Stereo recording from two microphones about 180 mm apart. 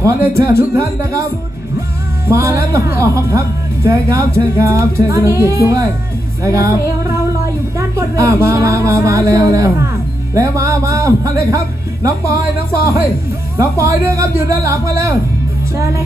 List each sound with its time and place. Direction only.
0.0 s speech: 15° right (ahead or behind)
2.2 s speech: 15° right (ahead or behind)
7.9 s speech: 15° right (ahead or behind)
13.6 s speech: 15° right (ahead or behind)